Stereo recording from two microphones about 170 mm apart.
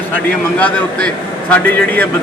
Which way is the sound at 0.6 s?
5° left (ahead or behind).